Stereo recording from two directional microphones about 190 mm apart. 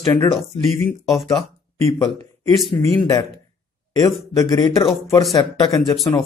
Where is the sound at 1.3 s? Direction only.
20° left (ahead or behind).